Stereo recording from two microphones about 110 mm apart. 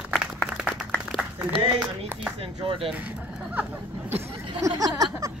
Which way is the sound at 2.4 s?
55° right (ahead or behind).